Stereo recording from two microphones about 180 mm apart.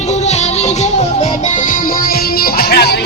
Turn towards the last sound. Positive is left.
turn(degrees=60)  # may be behind; listen again after turning